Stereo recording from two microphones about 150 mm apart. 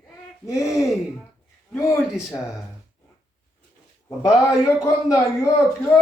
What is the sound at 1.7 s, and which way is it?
Speech, 15° left (ahead or behind).